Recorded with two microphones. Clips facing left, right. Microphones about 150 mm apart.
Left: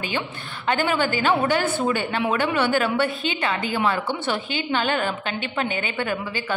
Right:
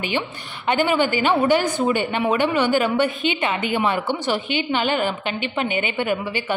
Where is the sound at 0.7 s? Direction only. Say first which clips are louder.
Right 3 dB; 15° right (ahead or behind).